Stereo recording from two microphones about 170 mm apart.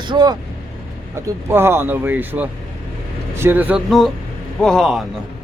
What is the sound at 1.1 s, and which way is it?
Speech, 15° right (ahead or behind).